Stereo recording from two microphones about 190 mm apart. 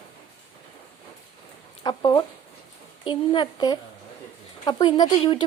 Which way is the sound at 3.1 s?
25° left (ahead or behind).